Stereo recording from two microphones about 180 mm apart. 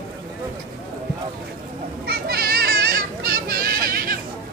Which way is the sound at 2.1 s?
60° right (ahead or behind).